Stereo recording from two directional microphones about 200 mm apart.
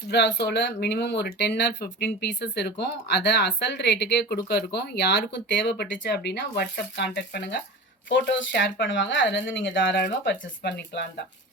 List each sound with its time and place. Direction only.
0.1 s speech: 60° left (ahead or behind)